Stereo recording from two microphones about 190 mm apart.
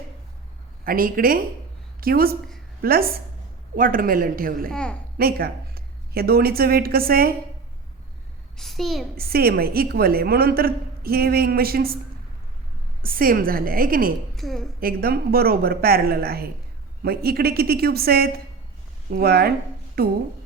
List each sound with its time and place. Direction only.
0.9 s a woman's voice: 50° right (ahead or behind)
4.7 s a woman's voice: 5° left (ahead or behind)
5.1 s a woman's voice: 55° right (ahead or behind)
8.5 s a child's voice: centre (ahead or behind)
9.1 s a woman's voice: 55° right (ahead or behind)
13.0 s a woman's voice: 50° right (ahead or behind)
14.3 s a woman's voice: centre (ahead or behind)
14.8 s a woman's voice: 50° right (ahead or behind)